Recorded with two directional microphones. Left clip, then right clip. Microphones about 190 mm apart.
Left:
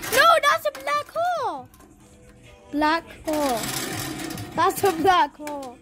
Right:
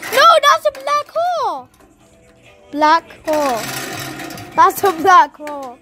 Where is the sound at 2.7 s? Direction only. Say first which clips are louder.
Right 9 dB; 10° right (ahead or behind).